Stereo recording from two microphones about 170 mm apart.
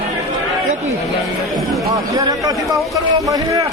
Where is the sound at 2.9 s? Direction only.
20° right (ahead or behind).